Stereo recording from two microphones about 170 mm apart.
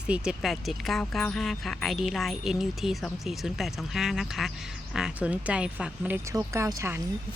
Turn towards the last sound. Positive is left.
turn(degrees=-15)  # may be behind; listen again after turning